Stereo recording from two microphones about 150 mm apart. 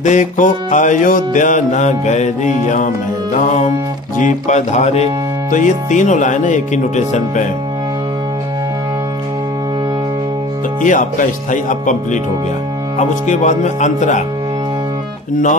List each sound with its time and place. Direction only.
0.0 s speech: 55° left (ahead or behind)
10.8 s speech: 60° left (ahead or behind)